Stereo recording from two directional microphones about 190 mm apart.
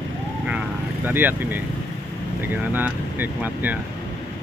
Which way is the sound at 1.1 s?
10° right (ahead or behind).